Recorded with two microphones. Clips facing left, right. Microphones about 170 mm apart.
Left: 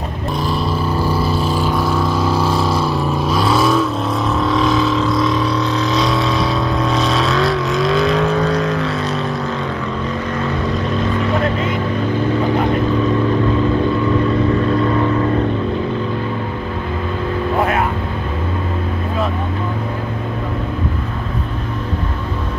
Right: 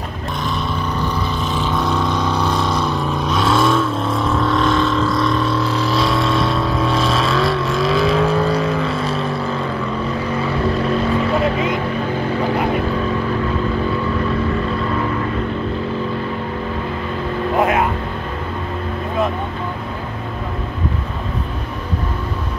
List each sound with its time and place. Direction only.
0.4 s motorboat: centre (ahead or behind)
1.2 s motorboat: 35° left (ahead or behind)
1.6 s motorboat: 5° left (ahead or behind)
11.3 s vehicle: 5° right (ahead or behind)